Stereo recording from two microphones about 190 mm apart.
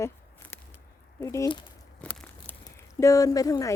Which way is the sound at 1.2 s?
15° left (ahead or behind).